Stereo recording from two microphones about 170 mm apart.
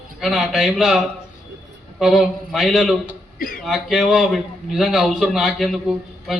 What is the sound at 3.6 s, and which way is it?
A man's voice, centre (ahead or behind).